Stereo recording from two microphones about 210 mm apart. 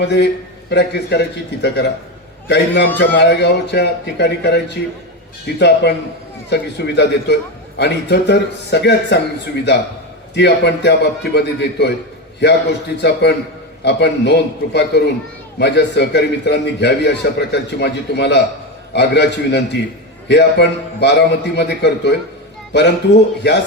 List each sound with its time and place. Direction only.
0.0 s a man's voice: 55° left (ahead or behind)
3.0 s a man's voice: 55° left (ahead or behind)
10.3 s a man's voice: 55° left (ahead or behind)